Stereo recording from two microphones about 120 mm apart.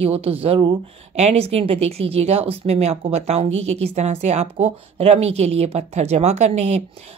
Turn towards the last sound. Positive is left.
turn(degrees=-70)  # may be behind; listen again after turning